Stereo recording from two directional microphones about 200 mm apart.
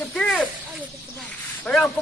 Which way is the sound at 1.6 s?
5° left (ahead or behind).